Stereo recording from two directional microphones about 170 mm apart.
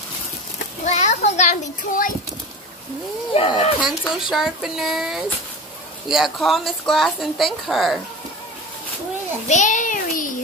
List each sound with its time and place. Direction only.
0.8 s a sound: 40° left (ahead or behind)
3.3 s speech: 30° left (ahead or behind)
3.8 s a woman's voice: 5° right (ahead or behind)
9.5 s a child's voice: 45° left (ahead or behind)